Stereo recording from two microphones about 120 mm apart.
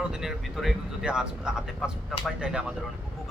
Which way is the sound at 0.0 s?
5° right (ahead or behind).